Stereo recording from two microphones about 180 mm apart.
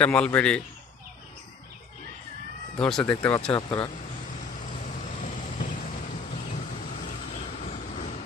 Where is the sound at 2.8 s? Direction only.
5° left (ahead or behind).